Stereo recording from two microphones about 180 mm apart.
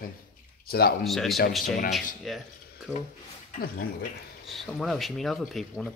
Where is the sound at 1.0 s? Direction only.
Centre (ahead or behind).